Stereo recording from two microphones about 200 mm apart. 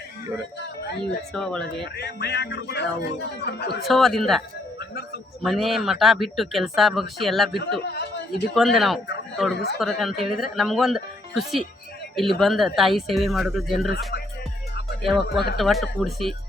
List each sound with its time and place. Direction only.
1.3 s speech: 5° left (ahead or behind)
2.0 s speech: 55° left (ahead or behind)
3.8 s speech: centre (ahead or behind)
7.9 s speech: 55° left (ahead or behind)
8.5 s speech: centre (ahead or behind)
15.0 s speech: centre (ahead or behind)